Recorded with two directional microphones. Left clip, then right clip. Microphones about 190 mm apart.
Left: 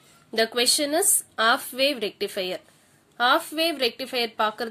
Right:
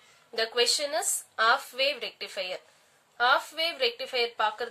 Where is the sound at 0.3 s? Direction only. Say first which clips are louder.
Left 4 dB; 45° left (ahead or behind).